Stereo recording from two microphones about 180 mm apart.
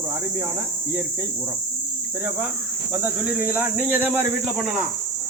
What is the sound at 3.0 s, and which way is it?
Speech, 10° right (ahead or behind).